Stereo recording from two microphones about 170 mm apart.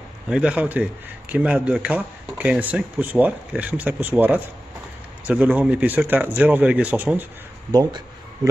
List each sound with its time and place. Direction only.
0.3 s speech: 5° right (ahead or behind)
7.7 s speech: 25° right (ahead or behind)